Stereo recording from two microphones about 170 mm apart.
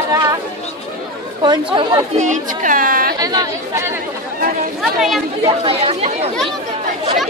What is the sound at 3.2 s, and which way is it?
Speech, 20° right (ahead or behind).